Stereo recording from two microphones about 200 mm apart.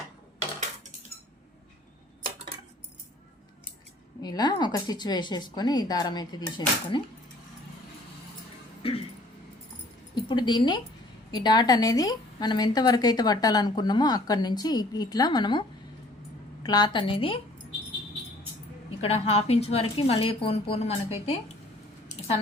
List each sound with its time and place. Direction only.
4.2 s a woman's voice: 20° left (ahead or behind)
8.8 s music: 30° left (ahead or behind)
10.2 s a sound: 20° left (ahead or behind)
11.3 s a woman's voice: 20° left (ahead or behind)
16.6 s a woman's voice: 20° left (ahead or behind)
19.0 s a woman's voice: 30° left (ahead or behind)